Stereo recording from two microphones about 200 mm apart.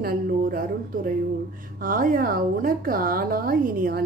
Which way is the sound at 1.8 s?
45° right (ahead or behind).